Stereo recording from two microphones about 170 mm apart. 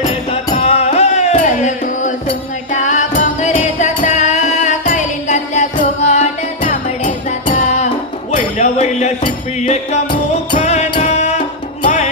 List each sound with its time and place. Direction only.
0.0 s music: 40° left (ahead or behind)
10.5 s music: 40° left (ahead or behind)